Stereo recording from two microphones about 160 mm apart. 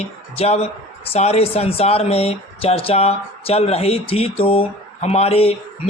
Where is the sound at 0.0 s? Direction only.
40° left (ahead or behind).